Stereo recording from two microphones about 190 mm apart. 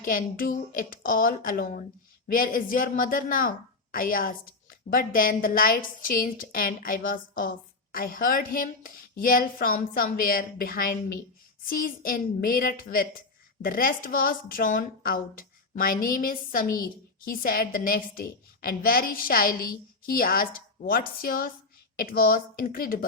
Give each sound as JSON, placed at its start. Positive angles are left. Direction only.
{"t": 0.0, "sound": "a woman's voice", "side_deg": 45}